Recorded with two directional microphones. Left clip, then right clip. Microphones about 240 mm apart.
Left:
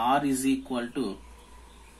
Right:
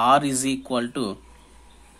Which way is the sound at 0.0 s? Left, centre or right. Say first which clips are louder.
Right 6 dB; right.